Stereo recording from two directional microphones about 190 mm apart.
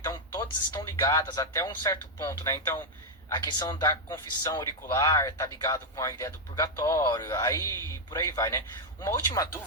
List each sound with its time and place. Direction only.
0.0 s speech: 20° left (ahead or behind)